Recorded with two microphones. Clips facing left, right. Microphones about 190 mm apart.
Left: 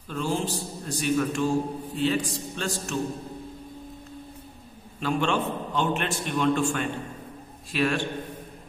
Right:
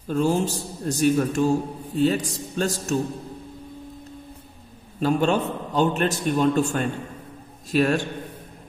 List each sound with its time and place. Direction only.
0.1 s a man's voice: 45° right (ahead or behind)
5.0 s a man's voice: 40° right (ahead or behind)